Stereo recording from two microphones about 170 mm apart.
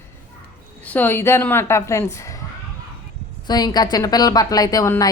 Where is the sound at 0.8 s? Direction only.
10° left (ahead or behind).